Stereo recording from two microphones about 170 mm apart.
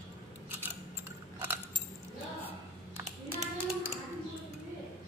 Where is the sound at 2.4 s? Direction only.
15° right (ahead or behind).